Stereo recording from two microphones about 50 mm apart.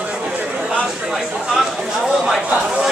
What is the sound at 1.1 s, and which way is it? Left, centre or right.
Speech, centre.